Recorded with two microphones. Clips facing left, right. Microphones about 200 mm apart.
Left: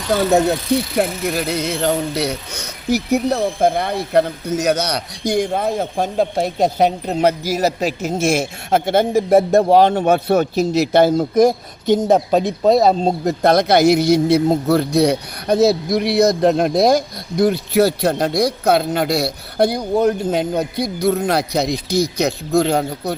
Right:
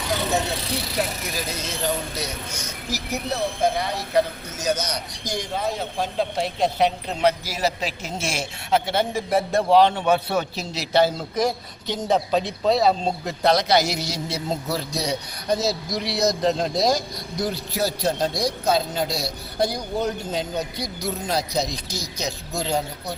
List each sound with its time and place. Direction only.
0.9 s a man's voice: 60° left (ahead or behind)